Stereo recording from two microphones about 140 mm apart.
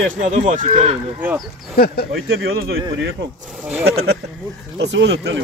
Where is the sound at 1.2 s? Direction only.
5° right (ahead or behind).